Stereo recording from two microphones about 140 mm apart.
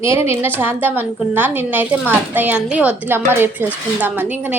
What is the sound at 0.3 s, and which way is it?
A woman's voice, 15° right (ahead or behind).